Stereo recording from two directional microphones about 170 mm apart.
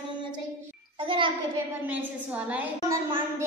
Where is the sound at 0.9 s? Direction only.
30° right (ahead or behind).